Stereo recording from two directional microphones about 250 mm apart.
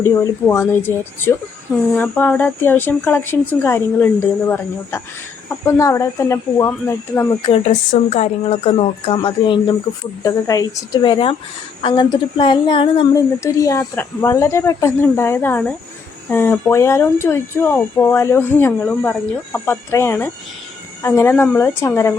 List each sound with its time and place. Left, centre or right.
0.0 s a woman's voice: centre
8.1 s a woman's voice: left; by 22.1 s centre